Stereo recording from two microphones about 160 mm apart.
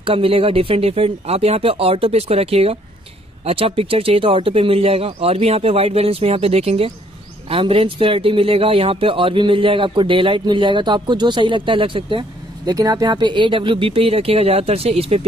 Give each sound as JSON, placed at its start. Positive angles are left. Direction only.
{"t": 0.0, "sound": "speech", "side_deg": -35}